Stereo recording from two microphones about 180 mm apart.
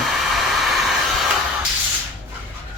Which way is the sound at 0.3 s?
Centre (ahead or behind).